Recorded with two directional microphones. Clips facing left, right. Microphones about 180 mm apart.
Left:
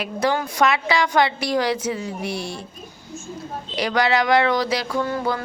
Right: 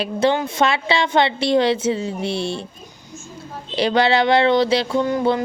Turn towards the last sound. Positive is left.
turn(degrees=-20)  # may be behind; listen again after turning